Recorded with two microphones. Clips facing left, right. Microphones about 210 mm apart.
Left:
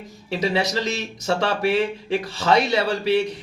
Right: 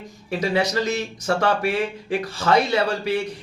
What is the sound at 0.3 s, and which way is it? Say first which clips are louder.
A man's voice: right 1 dB; 20° left (ahead or behind).